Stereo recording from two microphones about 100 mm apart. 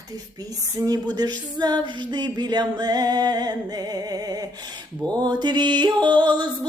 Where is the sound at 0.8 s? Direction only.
40° right (ahead or behind).